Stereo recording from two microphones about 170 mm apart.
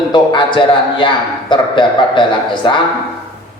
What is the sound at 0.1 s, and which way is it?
A man's voice, 30° left (ahead or behind).